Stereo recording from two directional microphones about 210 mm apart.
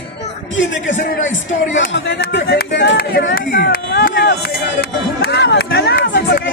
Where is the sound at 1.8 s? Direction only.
55° left (ahead or behind).